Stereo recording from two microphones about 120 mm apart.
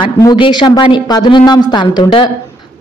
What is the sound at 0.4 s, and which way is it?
A man's voice, 40° left (ahead or behind).